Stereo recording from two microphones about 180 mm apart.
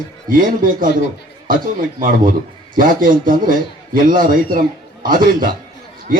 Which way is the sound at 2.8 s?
50° right (ahead or behind).